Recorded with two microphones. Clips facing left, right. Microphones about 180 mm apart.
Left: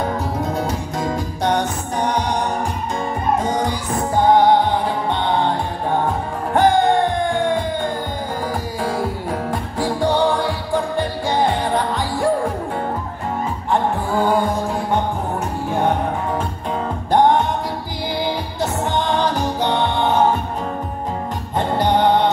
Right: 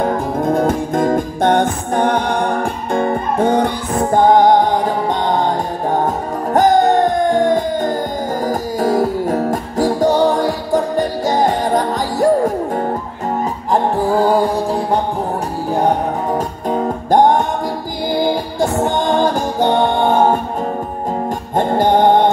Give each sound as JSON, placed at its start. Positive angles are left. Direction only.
{"t": 0.0, "sound": "music", "side_deg": -50}
{"t": 16.3, "sound": "music", "side_deg": -40}
{"t": 21.5, "sound": "music", "side_deg": -50}